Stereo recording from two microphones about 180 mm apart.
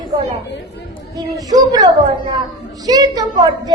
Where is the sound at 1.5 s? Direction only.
20° right (ahead or behind).